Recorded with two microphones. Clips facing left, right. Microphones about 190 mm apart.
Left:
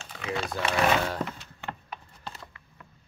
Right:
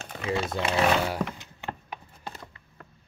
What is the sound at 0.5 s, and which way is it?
Speech, 25° right (ahead or behind).